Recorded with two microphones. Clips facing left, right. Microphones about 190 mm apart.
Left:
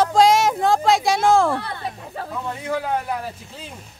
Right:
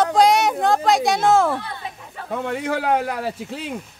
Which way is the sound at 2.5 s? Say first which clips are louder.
Right 3 dB; 80° right.